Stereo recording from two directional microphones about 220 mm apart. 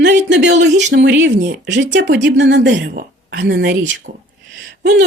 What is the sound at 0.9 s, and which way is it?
Speech, 50° right (ahead or behind).